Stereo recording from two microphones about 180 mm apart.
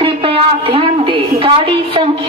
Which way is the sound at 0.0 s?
30° right (ahead or behind).